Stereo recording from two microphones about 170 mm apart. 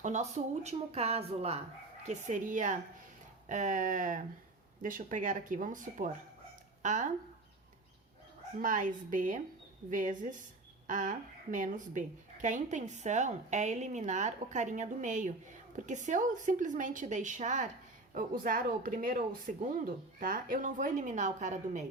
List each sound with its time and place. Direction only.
0.0 s a woman's voice: 45° right (ahead or behind)
8.5 s a woman's voice: 50° right (ahead or behind)